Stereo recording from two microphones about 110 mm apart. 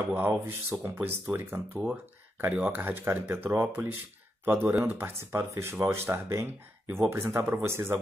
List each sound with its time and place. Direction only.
0.1 s speech: 20° right (ahead or behind)